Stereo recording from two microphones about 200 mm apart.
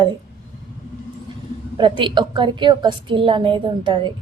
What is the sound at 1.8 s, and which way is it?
A woman's voice, 25° right (ahead or behind).